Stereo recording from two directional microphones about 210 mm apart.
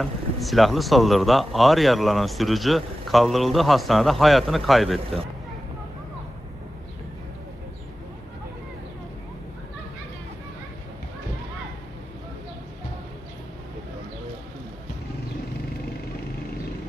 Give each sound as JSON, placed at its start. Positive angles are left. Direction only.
{"t": 0.0, "sound": "speech", "side_deg": 0}